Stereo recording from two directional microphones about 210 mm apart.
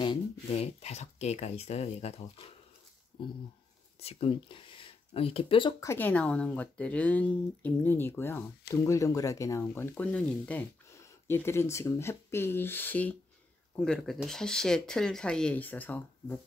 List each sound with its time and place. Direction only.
0.0 s speech: 25° left (ahead or behind)
4.0 s speech: 25° left (ahead or behind)
5.9 s speech: 10° left (ahead or behind)